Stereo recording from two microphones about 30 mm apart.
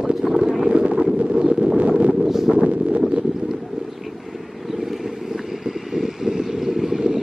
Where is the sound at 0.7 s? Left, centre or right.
Right.